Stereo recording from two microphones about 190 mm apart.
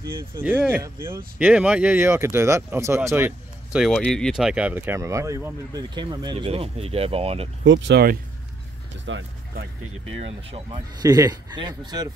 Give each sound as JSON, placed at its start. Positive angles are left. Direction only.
{"t": 0.3, "sound": "speech", "side_deg": -10}
{"t": 7.6, "sound": "speech", "side_deg": -75}
{"t": 9.0, "sound": "speech", "side_deg": -80}
{"t": 10.1, "sound": "speech", "side_deg": -30}